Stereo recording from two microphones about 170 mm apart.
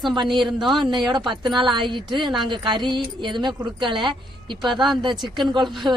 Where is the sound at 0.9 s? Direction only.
25° right (ahead or behind).